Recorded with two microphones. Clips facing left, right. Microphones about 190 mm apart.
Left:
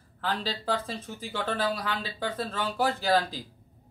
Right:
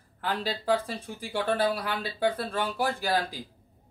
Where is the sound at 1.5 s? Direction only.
55° right (ahead or behind).